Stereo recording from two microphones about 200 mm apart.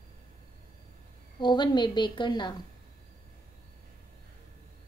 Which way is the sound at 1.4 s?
20° left (ahead or behind).